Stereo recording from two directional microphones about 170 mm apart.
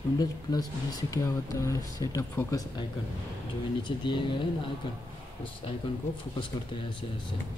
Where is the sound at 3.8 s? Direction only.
25° left (ahead or behind).